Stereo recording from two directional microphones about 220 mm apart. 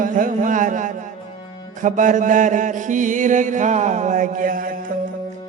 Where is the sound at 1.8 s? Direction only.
35° right (ahead or behind).